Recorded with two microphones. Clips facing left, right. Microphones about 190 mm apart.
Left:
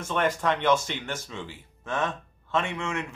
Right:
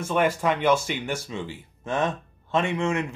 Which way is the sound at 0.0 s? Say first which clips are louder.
Right 3 dB; 10° right (ahead or behind).